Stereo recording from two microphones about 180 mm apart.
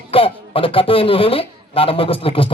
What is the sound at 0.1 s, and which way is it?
A man's voice, 30° left (ahead or behind).